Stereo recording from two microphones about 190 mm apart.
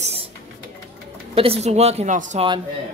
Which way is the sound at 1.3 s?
30° right (ahead or behind).